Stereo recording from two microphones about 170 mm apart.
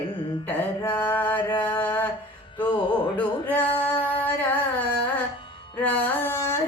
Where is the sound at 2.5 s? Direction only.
30° left (ahead or behind).